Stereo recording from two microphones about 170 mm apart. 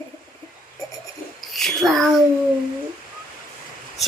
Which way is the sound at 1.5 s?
Centre (ahead or behind).